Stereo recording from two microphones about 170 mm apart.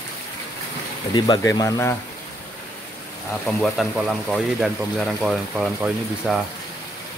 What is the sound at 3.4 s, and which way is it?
Speech, centre (ahead or behind).